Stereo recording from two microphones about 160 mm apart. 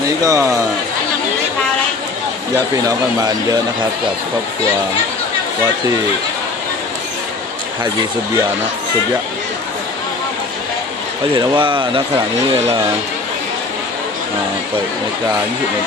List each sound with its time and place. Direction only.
0.2 s speech: 20° right (ahead or behind)
2.7 s speech: 25° right (ahead or behind)
11.3 s speech: 30° right (ahead or behind)